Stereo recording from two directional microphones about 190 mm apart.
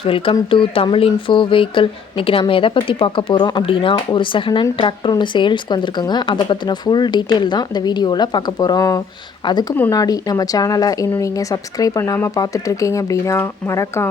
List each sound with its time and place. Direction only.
0.0 s speech: 30° left (ahead or behind)